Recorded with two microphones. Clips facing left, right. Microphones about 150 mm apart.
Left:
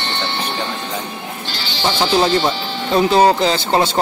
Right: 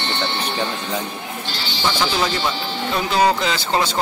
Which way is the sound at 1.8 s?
30° left (ahead or behind).